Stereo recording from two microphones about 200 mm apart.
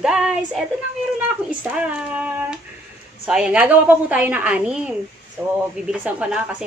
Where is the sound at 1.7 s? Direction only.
5° right (ahead or behind).